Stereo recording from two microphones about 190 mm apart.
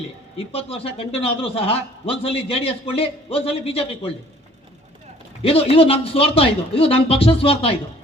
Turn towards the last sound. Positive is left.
turn(degrees=30)  # may be behind; listen again after turning